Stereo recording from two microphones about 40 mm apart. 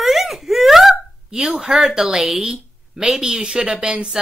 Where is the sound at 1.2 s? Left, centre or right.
Right.